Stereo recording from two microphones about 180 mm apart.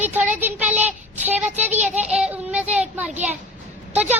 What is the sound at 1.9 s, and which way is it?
A child's voice, 5° right (ahead or behind).